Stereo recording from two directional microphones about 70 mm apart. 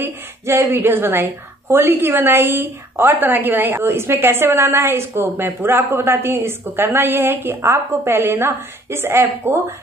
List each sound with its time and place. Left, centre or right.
0.0 s a woman's voice: right
7.6 s a woman's voice: right